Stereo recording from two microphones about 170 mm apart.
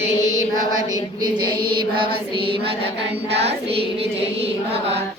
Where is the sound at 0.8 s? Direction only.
25° right (ahead or behind).